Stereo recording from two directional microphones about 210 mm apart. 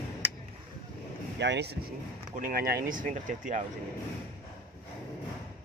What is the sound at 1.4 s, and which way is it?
Speech, 55° right (ahead or behind).